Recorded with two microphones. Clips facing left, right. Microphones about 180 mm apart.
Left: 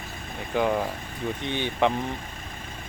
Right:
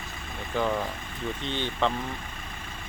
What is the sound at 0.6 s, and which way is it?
Speech, 15° left (ahead or behind).